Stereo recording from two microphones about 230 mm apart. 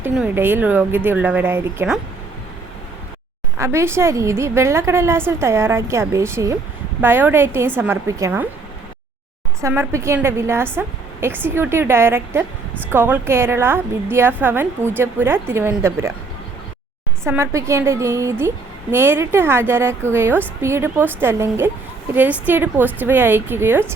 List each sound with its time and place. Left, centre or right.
0.0 s a woman's voice: centre
3.6 s a woman's voice: centre
9.6 s a woman's voice: centre
17.2 s a woman's voice: centre